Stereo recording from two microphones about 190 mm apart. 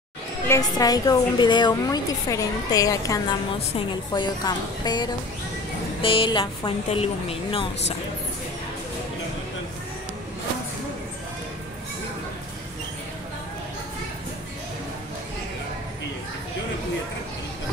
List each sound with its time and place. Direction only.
0.5 s a woman's voice: 20° left (ahead or behind)